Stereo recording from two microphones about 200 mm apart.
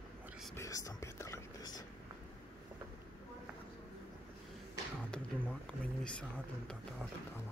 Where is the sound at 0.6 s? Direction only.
15° left (ahead or behind).